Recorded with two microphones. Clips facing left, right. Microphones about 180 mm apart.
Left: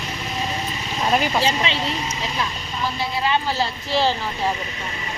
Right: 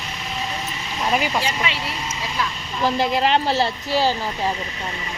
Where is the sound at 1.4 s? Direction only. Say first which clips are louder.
Left 3 dB; 25° left (ahead or behind).